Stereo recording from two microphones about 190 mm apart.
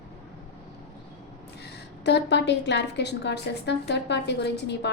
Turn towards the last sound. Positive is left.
turn(degrees=65)  # may be behind; listen again after turning